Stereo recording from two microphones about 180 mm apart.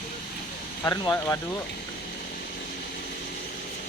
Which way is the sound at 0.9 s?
15° left (ahead or behind).